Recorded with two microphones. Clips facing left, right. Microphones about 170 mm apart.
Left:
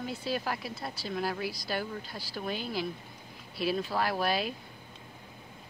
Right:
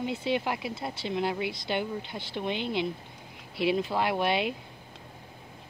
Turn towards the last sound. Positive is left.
turn(degrees=-25)  # may be behind; listen again after turning